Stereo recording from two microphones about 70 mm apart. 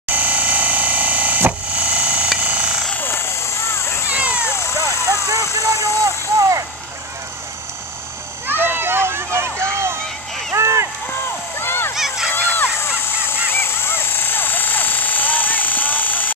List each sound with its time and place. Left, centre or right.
0.1 s a sound: right
3.0 s vehicle: left
4.1 s cat: centre
4.8 s a sound: right
5.9 s speech: right
8.5 s a sound: right
11.6 s fowl: left
11.9 s fowl: centre
12.3 s crow: left